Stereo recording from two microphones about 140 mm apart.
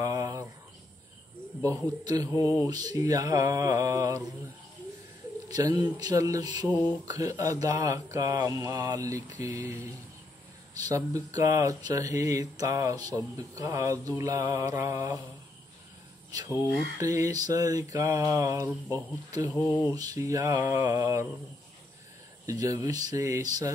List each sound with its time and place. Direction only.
0.0 s a sound: 25° right (ahead or behind)
1.6 s speech: 25° right (ahead or behind)
5.5 s speech: 25° right (ahead or behind)
16.3 s speech: 25° right (ahead or behind)
22.5 s speech: 25° right (ahead or behind)